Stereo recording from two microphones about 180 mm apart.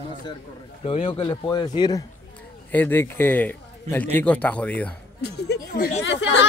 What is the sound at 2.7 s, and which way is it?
A man's voice, 10° left (ahead or behind).